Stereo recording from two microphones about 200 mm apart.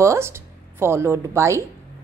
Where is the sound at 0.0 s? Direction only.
15° right (ahead or behind).